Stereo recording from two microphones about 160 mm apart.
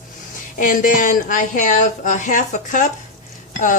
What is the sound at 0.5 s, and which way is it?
A woman's voice, 55° left (ahead or behind).